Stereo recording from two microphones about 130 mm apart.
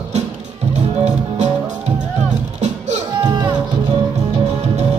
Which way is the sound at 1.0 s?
60° right (ahead or behind).